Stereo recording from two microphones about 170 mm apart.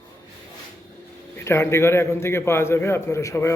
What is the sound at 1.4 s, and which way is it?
A man's voice, 15° left (ahead or behind).